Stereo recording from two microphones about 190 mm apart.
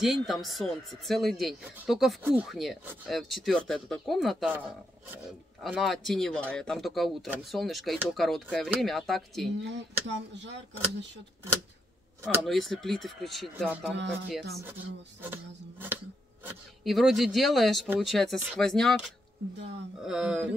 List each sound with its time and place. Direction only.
0.0 s speech: centre (ahead or behind)
5.6 s speech: centre (ahead or behind)
9.6 s speech: 65° right (ahead or behind)
12.4 s speech: centre (ahead or behind)
15.2 s speech: 10° right (ahead or behind)
16.8 s speech: centre (ahead or behind)
19.5 s speech: 65° right (ahead or behind)
20.0 s speech: 5° right (ahead or behind)